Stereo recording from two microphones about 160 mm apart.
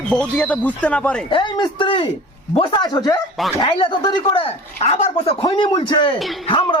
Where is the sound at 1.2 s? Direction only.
30° left (ahead or behind).